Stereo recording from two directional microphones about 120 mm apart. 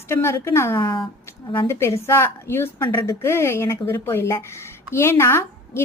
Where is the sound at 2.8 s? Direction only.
40° left (ahead or behind).